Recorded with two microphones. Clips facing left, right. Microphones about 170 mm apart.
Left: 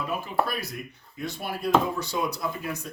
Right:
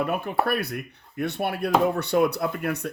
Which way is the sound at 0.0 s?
60° right (ahead or behind).